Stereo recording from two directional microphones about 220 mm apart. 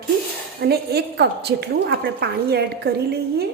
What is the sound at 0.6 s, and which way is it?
A woman's voice, 45° right (ahead or behind).